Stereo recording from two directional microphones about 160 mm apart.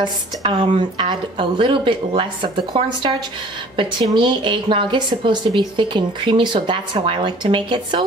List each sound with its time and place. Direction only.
0.0 s a woman's voice: 30° right (ahead or behind)